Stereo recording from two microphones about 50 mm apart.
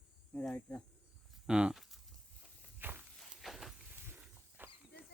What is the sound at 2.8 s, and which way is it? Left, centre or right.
Walk, right.